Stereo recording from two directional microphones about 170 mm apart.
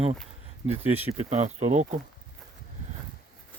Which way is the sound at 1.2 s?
40° right (ahead or behind).